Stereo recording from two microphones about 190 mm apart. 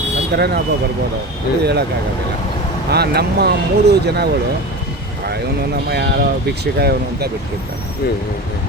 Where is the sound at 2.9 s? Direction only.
60° right (ahead or behind).